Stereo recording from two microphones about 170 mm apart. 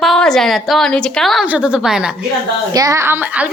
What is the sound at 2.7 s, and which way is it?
Speech, 20° right (ahead or behind).